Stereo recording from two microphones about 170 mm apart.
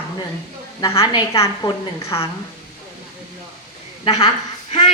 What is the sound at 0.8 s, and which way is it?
Speech, 15° left (ahead or behind).